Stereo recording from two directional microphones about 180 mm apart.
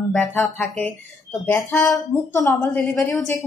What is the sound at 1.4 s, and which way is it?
A woman's voice, 10° left (ahead or behind).